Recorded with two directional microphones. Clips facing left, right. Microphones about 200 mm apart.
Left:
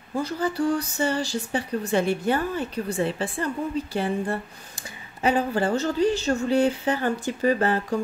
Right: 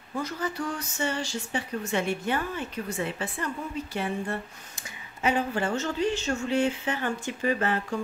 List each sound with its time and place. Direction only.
0.1 s speech: 30° left (ahead or behind)